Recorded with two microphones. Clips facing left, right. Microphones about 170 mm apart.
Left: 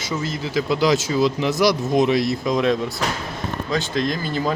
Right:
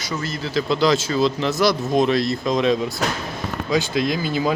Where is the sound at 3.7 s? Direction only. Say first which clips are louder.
Right 3 dB; 10° right (ahead or behind).